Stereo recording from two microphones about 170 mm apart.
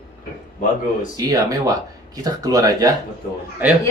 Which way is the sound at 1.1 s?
20° right (ahead or behind).